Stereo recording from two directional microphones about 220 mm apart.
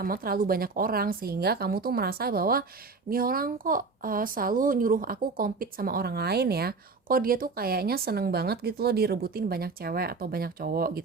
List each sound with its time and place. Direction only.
0.0 s a woman's voice: 40° right (ahead or behind)